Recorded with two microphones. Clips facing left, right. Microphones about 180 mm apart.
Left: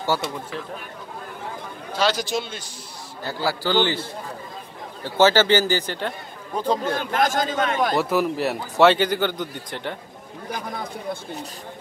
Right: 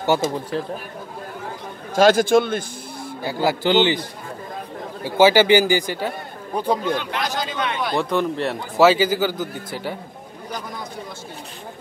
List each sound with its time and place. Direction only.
0.3 s speech: 35° right (ahead or behind)
2.0 s a man's voice: 50° right (ahead or behind)
3.4 s a man's voice: 20° right (ahead or behind)
6.8 s a man's voice: 45° left (ahead or behind)
7.9 s speech: 5° left (ahead or behind)